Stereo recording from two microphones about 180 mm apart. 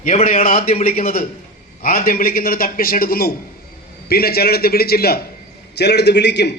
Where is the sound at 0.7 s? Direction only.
35° left (ahead or behind).